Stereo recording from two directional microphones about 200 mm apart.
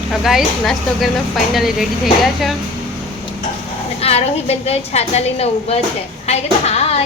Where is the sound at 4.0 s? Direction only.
30° left (ahead or behind).